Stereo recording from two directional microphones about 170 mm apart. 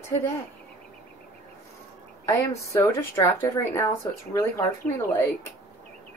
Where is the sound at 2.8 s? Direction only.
15° left (ahead or behind).